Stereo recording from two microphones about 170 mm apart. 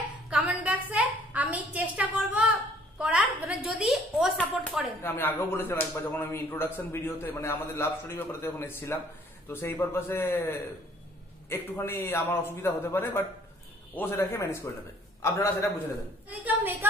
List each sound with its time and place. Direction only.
0.3 s a sound: 10° right (ahead or behind)
4.4 s speech: 10° left (ahead or behind)
16.3 s a woman's voice: 10° right (ahead or behind)